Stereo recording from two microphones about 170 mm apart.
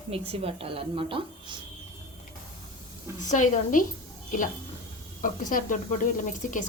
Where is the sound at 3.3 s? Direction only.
50° left (ahead or behind).